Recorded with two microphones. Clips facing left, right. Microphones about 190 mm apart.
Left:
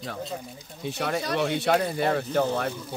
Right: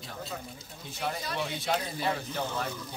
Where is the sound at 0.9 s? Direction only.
75° left (ahead or behind).